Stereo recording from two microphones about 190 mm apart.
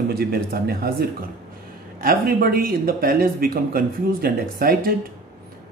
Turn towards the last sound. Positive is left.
turn(degrees=-50)  # may be behind; listen again after turning